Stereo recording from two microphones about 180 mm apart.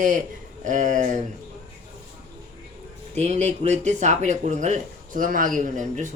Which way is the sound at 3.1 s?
40° right (ahead or behind).